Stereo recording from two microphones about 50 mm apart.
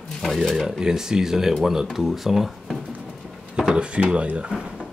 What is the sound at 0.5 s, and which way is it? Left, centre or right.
Speech, centre.